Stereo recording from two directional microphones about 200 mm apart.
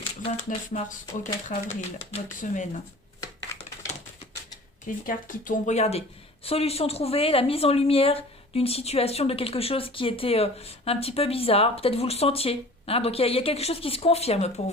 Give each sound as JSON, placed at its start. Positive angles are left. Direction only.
{"t": 0.0, "sound": "speech", "side_deg": 30}
{"t": 2.1, "sound": "speech", "side_deg": 40}
{"t": 5.0, "sound": "speech", "side_deg": 40}